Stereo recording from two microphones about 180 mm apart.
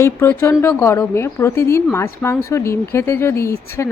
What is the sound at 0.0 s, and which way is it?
A woman's voice, 15° left (ahead or behind).